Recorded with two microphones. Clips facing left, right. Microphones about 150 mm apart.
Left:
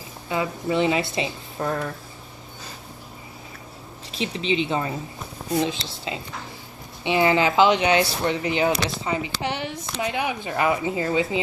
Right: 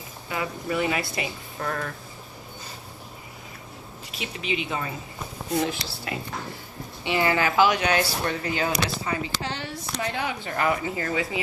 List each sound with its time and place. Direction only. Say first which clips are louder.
0.3 s speech: left 4 dB; 25° left (ahead or behind)
4.2 s speech: left 6 dB; 30° left (ahead or behind)